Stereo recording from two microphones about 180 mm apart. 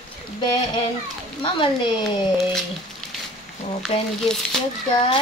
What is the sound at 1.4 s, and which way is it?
Speech, 30° left (ahead or behind).